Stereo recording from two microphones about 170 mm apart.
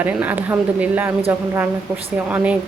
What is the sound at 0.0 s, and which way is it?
A woman's voice, 10° right (ahead or behind).